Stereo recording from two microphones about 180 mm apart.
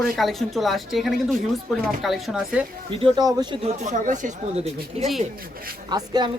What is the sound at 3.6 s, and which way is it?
Speech, 40° right (ahead or behind).